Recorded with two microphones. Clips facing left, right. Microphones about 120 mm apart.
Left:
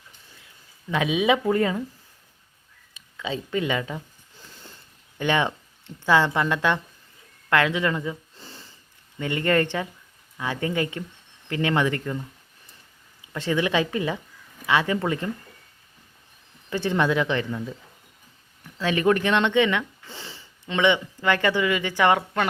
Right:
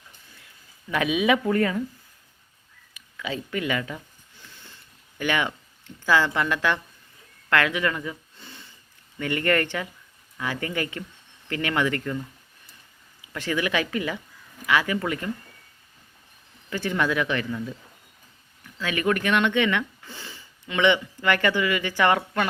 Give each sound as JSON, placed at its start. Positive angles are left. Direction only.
{"t": 0.9, "sound": "speech", "side_deg": 20}
{"t": 2.9, "sound": "speech", "side_deg": 25}
{"t": 5.1, "sound": "speech", "side_deg": 25}
{"t": 8.4, "sound": "snort", "side_deg": 35}
{"t": 9.1, "sound": "speech", "side_deg": 20}
{"t": 13.2, "sound": "speech", "side_deg": 20}
{"t": 16.6, "sound": "speech", "side_deg": 25}
{"t": 18.8, "sound": "speech", "side_deg": 25}